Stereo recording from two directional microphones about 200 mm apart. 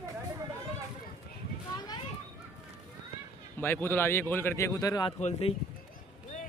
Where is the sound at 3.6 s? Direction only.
10° left (ahead or behind).